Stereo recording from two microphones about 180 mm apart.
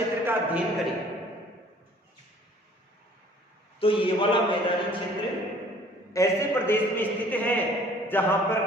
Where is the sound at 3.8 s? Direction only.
30° left (ahead or behind).